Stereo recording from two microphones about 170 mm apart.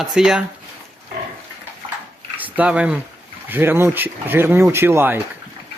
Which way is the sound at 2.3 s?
10° right (ahead or behind).